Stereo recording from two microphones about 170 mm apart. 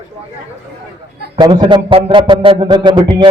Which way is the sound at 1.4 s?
25° right (ahead or behind).